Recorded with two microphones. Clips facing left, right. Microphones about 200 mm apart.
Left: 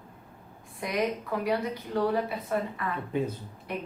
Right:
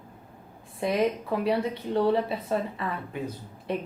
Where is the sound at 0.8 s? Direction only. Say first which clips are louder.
Right 4 dB; 25° right (ahead or behind).